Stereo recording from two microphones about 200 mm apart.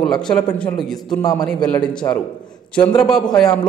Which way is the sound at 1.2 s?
20° left (ahead or behind).